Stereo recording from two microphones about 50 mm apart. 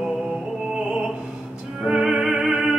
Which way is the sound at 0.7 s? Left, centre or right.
Centre.